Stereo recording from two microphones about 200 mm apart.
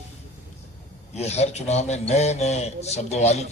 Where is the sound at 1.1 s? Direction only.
35° left (ahead or behind).